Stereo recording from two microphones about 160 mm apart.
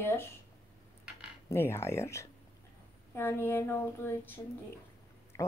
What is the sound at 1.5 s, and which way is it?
Speech, 15° left (ahead or behind).